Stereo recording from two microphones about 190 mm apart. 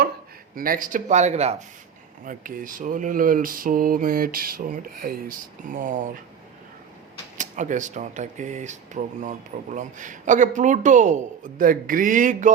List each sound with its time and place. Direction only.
0.5 s speech: 50° right (ahead or behind)
2.2 s speech: 45° right (ahead or behind)
7.3 s speech: 40° right (ahead or behind)